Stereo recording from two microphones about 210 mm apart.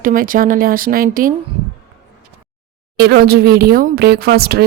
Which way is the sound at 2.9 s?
50° right (ahead or behind).